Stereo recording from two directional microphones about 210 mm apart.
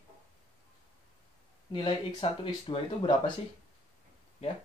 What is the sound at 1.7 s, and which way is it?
Speech, 20° left (ahead or behind).